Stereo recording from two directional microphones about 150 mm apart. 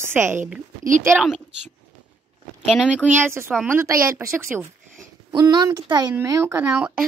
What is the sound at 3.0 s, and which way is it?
Speech, 15° right (ahead or behind).